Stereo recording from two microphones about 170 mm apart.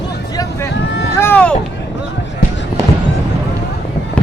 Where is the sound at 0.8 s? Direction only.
80° left.